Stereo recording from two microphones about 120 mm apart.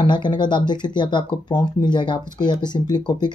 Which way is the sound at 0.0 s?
40° left (ahead or behind).